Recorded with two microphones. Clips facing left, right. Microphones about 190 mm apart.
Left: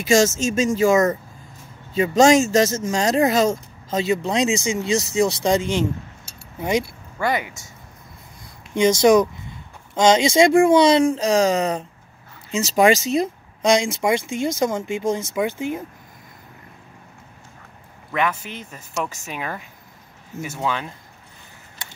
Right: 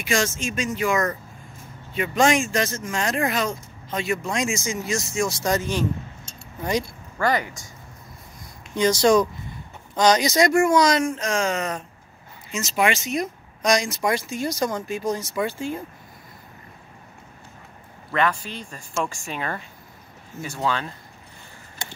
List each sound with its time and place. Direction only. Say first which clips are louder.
0.7 s speech: left 6 dB; 25° left (ahead or behind)
6.8 s speech: even; 10° left (ahead or behind)
8.7 s speech: left 3 dB; 25° left (ahead or behind)
18.1 s a man's voice: even; 10° left (ahead or behind)